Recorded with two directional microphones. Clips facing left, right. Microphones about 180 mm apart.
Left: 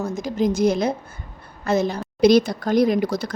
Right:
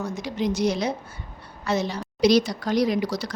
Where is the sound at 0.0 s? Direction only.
45° left (ahead or behind).